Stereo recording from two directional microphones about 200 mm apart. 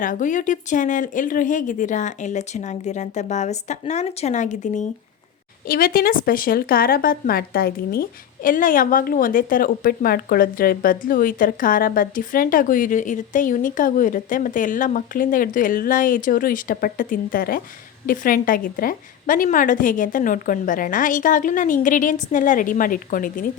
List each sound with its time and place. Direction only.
0.0 s a woman's voice: 40° left (ahead or behind)